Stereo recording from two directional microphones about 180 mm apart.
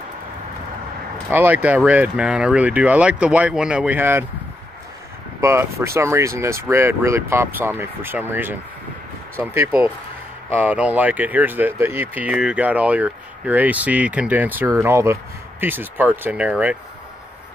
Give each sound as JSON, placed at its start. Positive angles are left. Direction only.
{"t": 1.3, "sound": "speech", "side_deg": -10}
{"t": 5.4, "sound": "speech", "side_deg": -15}